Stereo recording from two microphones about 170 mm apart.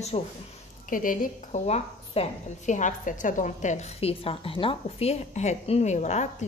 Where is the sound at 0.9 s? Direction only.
50° left (ahead or behind).